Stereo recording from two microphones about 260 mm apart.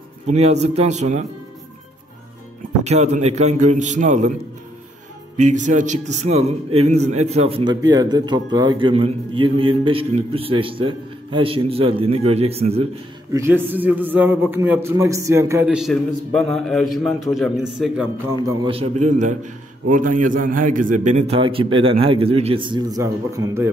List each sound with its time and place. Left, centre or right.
0.3 s a man's voice: right
2.8 s a man's voice: right
5.4 s a man's voice: right
13.3 s a man's voice: centre